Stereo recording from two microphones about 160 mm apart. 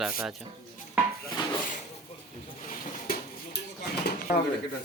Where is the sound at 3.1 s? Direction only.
70° left (ahead or behind).